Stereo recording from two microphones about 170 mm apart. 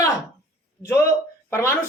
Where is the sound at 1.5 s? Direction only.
15° left (ahead or behind).